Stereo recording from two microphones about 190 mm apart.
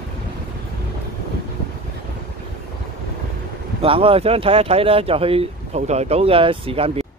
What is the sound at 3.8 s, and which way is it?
Speech, 30° right (ahead or behind).